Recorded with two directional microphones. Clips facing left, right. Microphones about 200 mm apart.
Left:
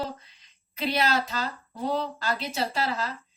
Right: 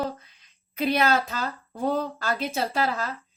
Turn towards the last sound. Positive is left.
turn(degrees=-50)  # may be behind; listen again after turning